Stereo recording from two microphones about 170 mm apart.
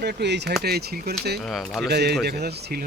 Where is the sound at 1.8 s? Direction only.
75° right (ahead or behind).